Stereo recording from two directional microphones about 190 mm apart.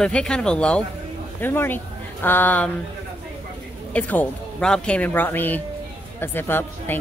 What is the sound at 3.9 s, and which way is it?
Speech, 10° left (ahead or behind).